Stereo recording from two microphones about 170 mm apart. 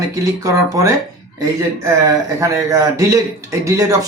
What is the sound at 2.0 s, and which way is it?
Speech, 20° right (ahead or behind).